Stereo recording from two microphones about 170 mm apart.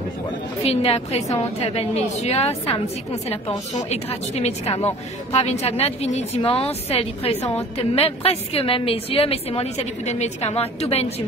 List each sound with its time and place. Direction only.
0.7 s a woman's voice: 35° left (ahead or behind)